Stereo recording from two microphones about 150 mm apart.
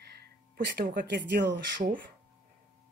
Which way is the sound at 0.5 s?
80° right.